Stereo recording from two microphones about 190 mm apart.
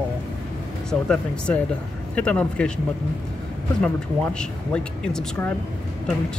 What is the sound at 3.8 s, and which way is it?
Speech, 5° left (ahead or behind).